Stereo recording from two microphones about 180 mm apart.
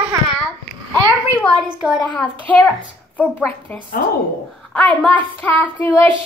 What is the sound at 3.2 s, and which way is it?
Child singing, 10° left (ahead or behind).